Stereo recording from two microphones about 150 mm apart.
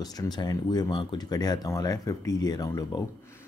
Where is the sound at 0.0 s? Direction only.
25° left (ahead or behind).